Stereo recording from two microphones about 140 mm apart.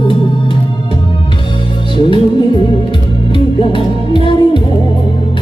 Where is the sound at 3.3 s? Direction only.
35° left (ahead or behind).